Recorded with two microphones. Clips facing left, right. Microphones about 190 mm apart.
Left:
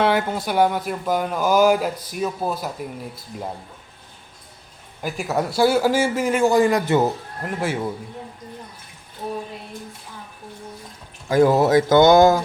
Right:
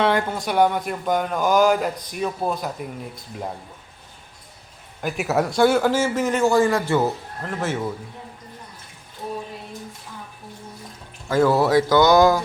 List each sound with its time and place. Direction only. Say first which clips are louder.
0.0 s speech: left 1 dB; 5° left (ahead or behind)
5.0 s a man's voice: right 2 dB; 5° right (ahead or behind); by 7.8 s 15° left (ahead or behind)
11.3 s speech: left 2 dB; 15° left (ahead or behind)